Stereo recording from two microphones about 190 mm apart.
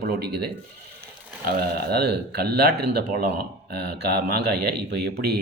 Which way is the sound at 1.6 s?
55° right (ahead or behind).